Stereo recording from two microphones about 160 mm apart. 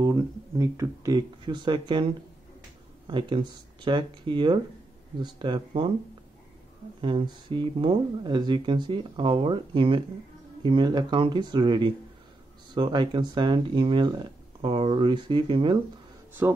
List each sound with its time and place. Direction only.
0.0 s speech: 20° right (ahead or behind)
3.1 s speech: 30° right (ahead or behind)
7.0 s speech: 30° right (ahead or behind)
16.4 s speech: 10° right (ahead or behind)